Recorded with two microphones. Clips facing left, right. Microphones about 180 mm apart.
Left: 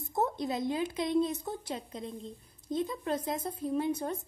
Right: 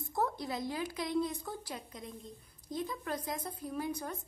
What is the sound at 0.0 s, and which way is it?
A woman's voice, 20° left (ahead or behind).